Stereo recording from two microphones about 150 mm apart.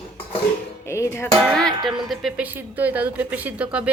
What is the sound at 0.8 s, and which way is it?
Music, 20° left (ahead or behind).